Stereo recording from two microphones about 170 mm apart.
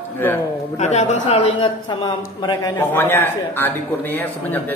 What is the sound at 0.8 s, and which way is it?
A man's voice, 40° left (ahead or behind).